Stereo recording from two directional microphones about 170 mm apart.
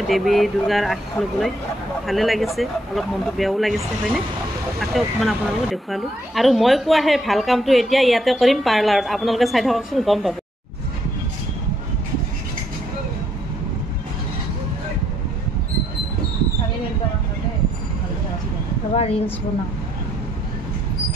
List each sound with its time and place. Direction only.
0.1 s speech: centre (ahead or behind)
2.0 s speech: centre (ahead or behind)
18.9 s speech: 35° left (ahead or behind)